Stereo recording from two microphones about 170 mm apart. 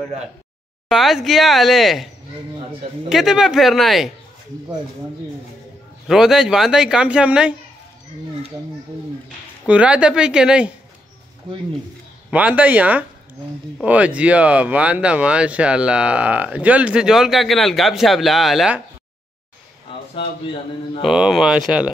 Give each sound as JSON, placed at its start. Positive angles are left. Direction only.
{"t": 0.8, "sound": "speech", "side_deg": 0}
{"t": 3.1, "sound": "speech", "side_deg": 0}
{"t": 6.0, "sound": "speech", "side_deg": -5}
{"t": 9.7, "sound": "speech", "side_deg": -5}
{"t": 12.3, "sound": "speech", "side_deg": -10}
{"t": 19.9, "sound": "a sound", "side_deg": 30}
{"t": 21.0, "sound": "speech", "side_deg": 0}